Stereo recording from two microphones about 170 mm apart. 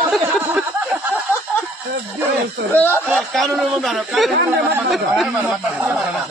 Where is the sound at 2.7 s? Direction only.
10° left (ahead or behind).